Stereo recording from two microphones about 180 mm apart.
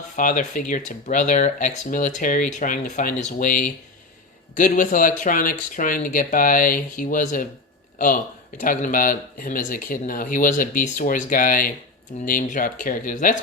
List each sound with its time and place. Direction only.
0.2 s speech: 45° left (ahead or behind)